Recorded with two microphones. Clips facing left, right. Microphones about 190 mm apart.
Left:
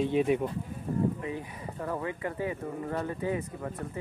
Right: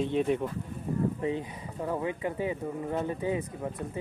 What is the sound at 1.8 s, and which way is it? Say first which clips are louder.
Speech: right 3 dB; 15° right (ahead or behind).